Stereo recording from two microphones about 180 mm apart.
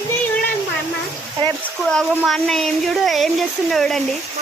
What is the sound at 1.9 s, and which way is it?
Speech, 5° left (ahead or behind).